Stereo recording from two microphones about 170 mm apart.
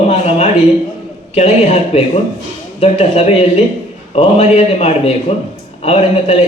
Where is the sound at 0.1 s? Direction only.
40° left (ahead or behind).